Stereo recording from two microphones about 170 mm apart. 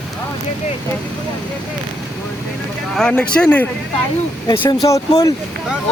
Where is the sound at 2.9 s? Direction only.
5° left (ahead or behind).